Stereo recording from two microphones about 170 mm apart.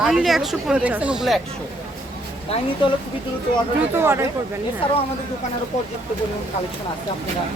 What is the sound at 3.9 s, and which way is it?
Speech, 15° right (ahead or behind).